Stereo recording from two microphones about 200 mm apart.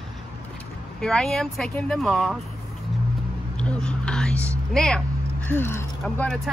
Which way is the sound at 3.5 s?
5° left (ahead or behind).